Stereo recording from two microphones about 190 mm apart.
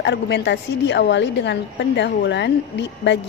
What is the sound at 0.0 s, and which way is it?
A woman's voice, 65° left (ahead or behind).